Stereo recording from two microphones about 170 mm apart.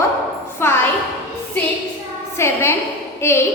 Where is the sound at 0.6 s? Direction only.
15° left (ahead or behind).